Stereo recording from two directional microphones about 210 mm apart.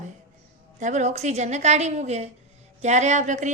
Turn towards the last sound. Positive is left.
turn(degrees=-35)  # may be behind; listen again after turning